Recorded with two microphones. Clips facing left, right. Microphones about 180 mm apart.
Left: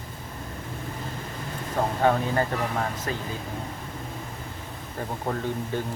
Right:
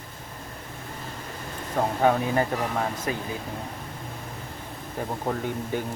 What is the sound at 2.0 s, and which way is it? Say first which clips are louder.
Speech: right 1 dB; 15° right (ahead or behind).